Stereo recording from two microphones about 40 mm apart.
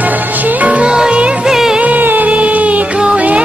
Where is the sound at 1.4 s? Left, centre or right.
Centre.